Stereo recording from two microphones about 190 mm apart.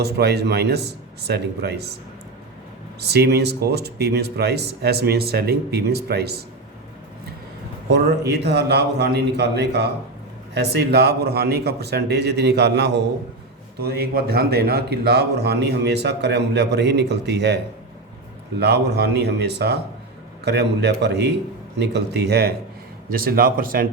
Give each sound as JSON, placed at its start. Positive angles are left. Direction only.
{"t": 0.0, "sound": "a man's voice", "side_deg": -60}
{"t": 3.0, "sound": "a man's voice", "side_deg": -60}
{"t": 7.9, "sound": "a man's voice", "side_deg": -60}
{"t": 18.6, "sound": "a man's voice", "side_deg": -60}